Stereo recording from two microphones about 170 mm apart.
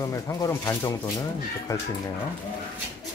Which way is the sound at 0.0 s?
20° left (ahead or behind).